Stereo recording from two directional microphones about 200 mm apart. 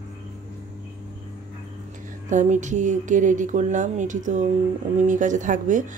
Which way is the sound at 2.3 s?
40° right (ahead or behind).